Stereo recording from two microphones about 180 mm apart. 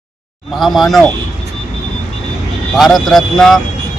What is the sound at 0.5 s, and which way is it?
Speech, centre (ahead or behind).